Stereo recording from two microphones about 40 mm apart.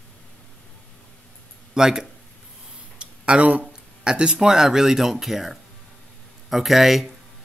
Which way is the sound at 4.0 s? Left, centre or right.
Right.